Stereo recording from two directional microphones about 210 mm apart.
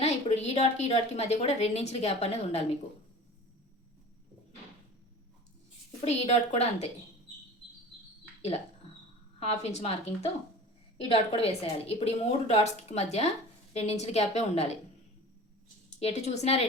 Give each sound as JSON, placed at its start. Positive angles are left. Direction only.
{"t": 0.0, "sound": "a woman's voice", "side_deg": 30}
{"t": 6.1, "sound": "a woman's voice", "side_deg": 30}
{"t": 9.4, "sound": "a woman's voice", "side_deg": 30}
{"t": 16.0, "sound": "a woman's voice", "side_deg": 30}